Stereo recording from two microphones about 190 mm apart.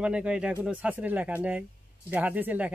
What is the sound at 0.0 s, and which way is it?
Speech, 5° right (ahead or behind).